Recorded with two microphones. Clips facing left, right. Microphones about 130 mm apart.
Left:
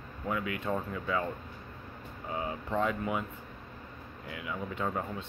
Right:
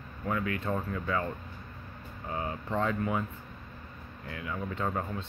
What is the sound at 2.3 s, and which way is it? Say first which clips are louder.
Speech: even; 10° left (ahead or behind).